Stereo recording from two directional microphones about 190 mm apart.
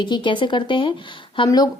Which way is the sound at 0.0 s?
25° left (ahead or behind).